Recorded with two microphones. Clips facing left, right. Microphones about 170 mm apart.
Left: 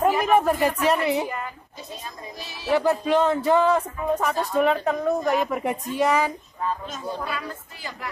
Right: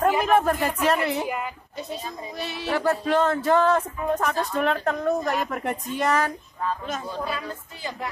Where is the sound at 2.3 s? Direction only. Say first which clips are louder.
Right 5 dB; 60° right (ahead or behind).